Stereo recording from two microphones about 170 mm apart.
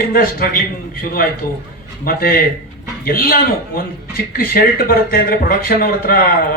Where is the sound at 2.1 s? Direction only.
60° left (ahead or behind).